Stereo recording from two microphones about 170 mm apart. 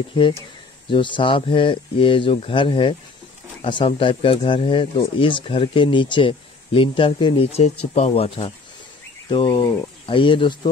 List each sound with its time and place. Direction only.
0.1 s speech: 30° left (ahead or behind)